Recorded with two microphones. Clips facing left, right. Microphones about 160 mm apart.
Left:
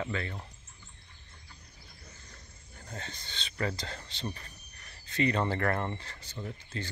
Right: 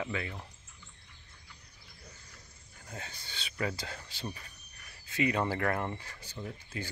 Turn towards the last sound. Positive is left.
turn(degrees=-10)  # may be behind; listen again after turning